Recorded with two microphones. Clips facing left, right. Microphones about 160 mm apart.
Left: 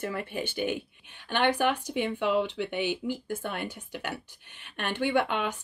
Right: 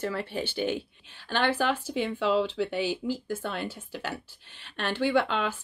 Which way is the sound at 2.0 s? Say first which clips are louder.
Right 2 dB; 55° left (ahead or behind).